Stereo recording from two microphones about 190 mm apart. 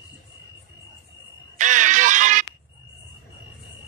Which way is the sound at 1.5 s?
40° right (ahead or behind).